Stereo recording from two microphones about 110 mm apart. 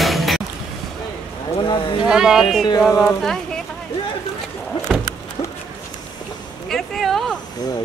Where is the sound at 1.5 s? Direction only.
45° left (ahead or behind).